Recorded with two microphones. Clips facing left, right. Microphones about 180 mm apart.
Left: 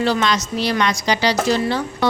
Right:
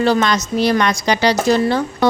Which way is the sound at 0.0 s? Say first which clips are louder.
Right 3 dB; 50° right (ahead or behind).